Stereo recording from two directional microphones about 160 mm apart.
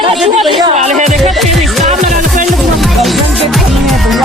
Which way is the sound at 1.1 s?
Centre (ahead or behind).